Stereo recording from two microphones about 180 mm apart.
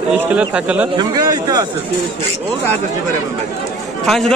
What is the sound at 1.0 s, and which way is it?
Speech, 20° right (ahead or behind).